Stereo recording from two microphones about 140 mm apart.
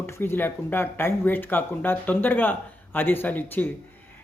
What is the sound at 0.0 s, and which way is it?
Speech, 15° left (ahead or behind).